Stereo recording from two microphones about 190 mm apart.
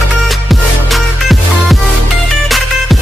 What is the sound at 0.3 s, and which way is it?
Music, centre (ahead or behind).